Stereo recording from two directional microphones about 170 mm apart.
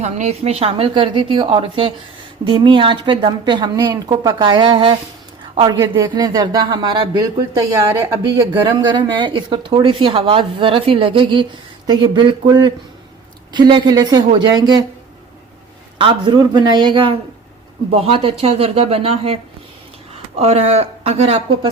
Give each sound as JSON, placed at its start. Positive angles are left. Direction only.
{"t": 0.0, "sound": "a woman's voice", "side_deg": -40}
{"t": 16.0, "sound": "a woman's voice", "side_deg": -30}